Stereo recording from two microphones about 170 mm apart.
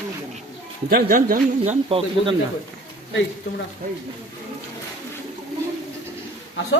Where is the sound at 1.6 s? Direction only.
35° right (ahead or behind).